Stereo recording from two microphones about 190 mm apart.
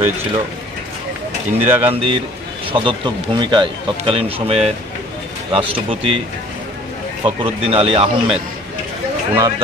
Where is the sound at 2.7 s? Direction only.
25° right (ahead or behind).